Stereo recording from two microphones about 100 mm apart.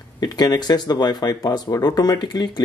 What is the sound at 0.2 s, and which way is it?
Speech, 40° left (ahead or behind).